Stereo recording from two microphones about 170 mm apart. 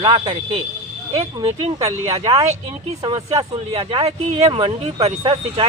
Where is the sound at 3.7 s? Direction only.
35° right (ahead or behind).